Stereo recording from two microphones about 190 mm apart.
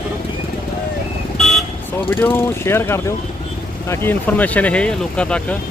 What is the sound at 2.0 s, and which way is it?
Speech, 10° left (ahead or behind).